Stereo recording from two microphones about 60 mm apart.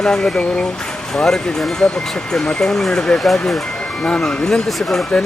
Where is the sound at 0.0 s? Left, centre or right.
Centre.